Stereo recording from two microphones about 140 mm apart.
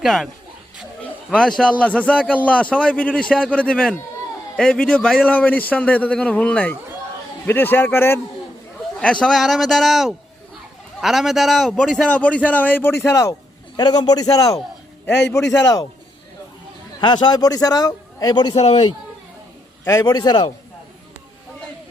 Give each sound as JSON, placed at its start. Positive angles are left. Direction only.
{"t": 0.0, "sound": "a man's voice", "side_deg": 0}
{"t": 17.0, "sound": "a man's voice", "side_deg": 35}
{"t": 18.5, "sound": "a man's voice", "side_deg": 50}
{"t": 19.9, "sound": "a man's voice", "side_deg": 30}